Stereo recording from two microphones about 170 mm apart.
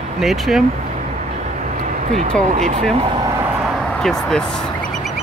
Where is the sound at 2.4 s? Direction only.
40° right (ahead or behind); by 3.4 s 25° right (ahead or behind).